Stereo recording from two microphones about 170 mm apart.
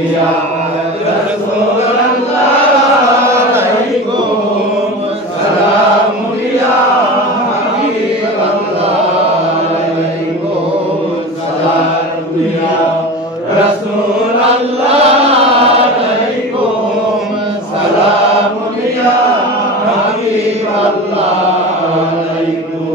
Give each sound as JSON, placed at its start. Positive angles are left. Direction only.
{"t": 14.9, "sound": "chant", "side_deg": -35}